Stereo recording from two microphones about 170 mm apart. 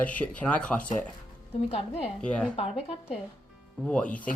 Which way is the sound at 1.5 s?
40° left (ahead or behind).